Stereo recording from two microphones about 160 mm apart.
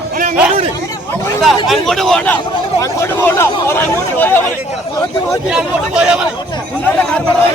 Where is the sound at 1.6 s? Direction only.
Centre (ahead or behind).